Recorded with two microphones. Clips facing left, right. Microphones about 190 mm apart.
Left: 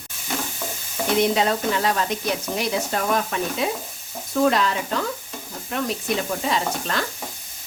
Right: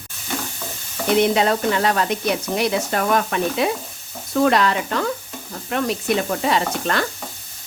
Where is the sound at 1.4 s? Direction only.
65° right (ahead or behind).